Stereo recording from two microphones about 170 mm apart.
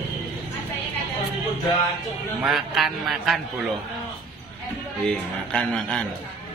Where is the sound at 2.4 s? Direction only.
Centre (ahead or behind).